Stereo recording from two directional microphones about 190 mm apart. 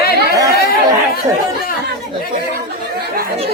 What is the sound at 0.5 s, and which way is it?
Chatter, 55° left (ahead or behind).